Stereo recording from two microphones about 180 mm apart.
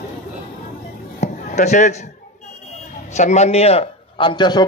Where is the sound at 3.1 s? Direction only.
40° left (ahead or behind).